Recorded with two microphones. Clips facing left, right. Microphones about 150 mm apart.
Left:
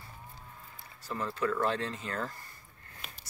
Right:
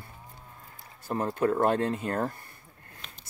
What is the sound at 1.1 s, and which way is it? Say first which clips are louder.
Speech: right 6 dB; 55° right (ahead or behind).